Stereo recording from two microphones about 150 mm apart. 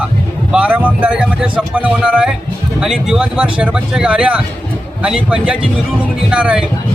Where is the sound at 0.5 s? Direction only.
10° right (ahead or behind).